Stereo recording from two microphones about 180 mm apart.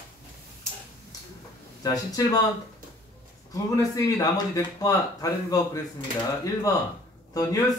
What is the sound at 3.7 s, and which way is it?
Speech, 20° left (ahead or behind).